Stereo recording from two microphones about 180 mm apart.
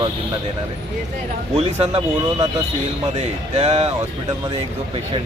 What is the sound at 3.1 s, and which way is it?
Speech, 35° right (ahead or behind).